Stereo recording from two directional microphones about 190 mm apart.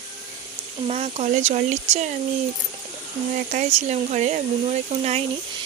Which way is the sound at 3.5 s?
40° right (ahead or behind).